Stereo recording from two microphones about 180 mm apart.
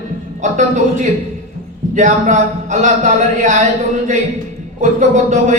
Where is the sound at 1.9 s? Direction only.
40° right (ahead or behind).